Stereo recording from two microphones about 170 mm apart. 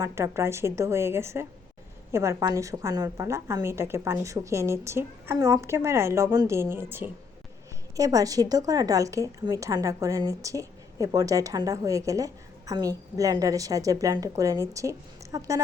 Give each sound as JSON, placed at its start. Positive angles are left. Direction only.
{"t": 0.0, "sound": "a woman's voice", "side_deg": -15}
{"t": 7.9, "sound": "a woman's voice", "side_deg": -20}